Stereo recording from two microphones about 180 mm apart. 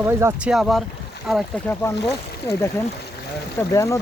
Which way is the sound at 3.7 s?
15° left (ahead or behind).